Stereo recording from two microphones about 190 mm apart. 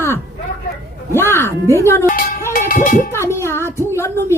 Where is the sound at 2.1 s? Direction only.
45° left (ahead or behind).